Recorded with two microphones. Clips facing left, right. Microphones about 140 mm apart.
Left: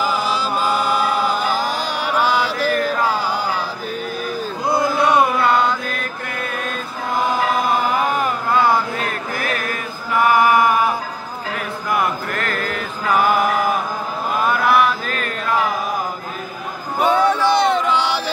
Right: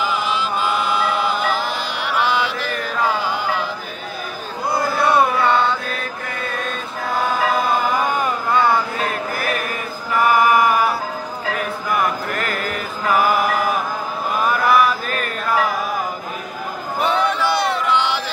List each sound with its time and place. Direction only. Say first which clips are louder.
0.0 s chant: left 1 dB; 40° left (ahead or behind)
4.9 s carnatic music: right 1 dB; 15° left (ahead or behind)
7.9 s carnatic music: left 1 dB; 5° left (ahead or behind)
9.4 s music: even; 10° right (ahead or behind)
12.3 s mantra: even; 10° right (ahead or behind)
14.4 s chant: even; centre (ahead or behind)
17.0 s a sound: left 4 dB; 15° left (ahead or behind)
17.9 s a sound: even; 35° left (ahead or behind)